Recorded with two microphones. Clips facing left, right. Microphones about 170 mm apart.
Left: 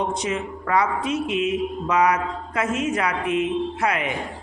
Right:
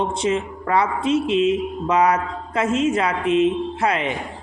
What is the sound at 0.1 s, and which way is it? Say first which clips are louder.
Mantra: right 4 dB; 30° right (ahead or behind).